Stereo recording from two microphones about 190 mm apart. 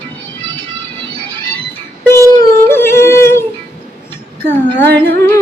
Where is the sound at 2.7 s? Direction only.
15° left (ahead or behind).